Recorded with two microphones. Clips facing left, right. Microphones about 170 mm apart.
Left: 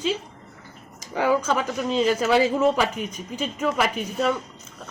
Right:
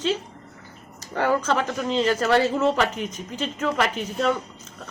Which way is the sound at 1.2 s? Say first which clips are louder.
Even; 10° left (ahead or behind).